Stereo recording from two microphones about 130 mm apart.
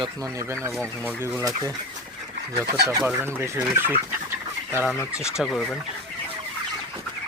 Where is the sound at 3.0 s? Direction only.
15° right (ahead or behind).